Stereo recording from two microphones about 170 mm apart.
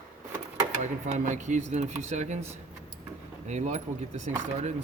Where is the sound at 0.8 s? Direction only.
45° right (ahead or behind).